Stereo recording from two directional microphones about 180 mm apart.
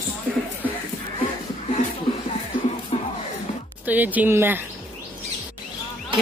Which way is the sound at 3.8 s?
10° right (ahead or behind).